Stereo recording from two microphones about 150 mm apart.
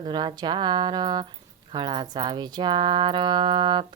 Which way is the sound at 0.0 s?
30° right (ahead or behind).